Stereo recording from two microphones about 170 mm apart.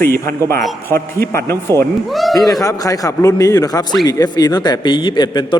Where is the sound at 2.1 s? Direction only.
Centre (ahead or behind).